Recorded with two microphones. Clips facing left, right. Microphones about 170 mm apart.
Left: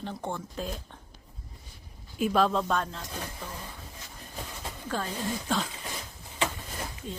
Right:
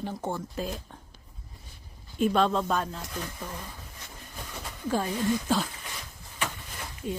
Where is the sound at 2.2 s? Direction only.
Centre (ahead or behind).